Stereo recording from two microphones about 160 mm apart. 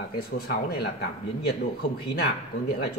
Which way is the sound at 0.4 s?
80° left.